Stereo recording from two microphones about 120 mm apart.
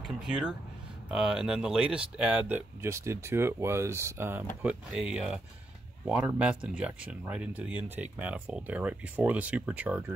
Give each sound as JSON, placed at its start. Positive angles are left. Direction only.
{"t": 0.0, "sound": "speech", "side_deg": -5}